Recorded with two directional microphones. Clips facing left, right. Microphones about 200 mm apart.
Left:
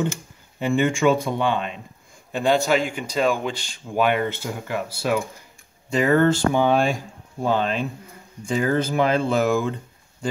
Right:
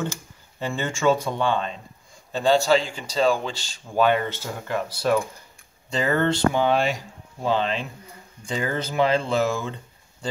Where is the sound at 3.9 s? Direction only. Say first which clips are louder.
Even; 15° left (ahead or behind).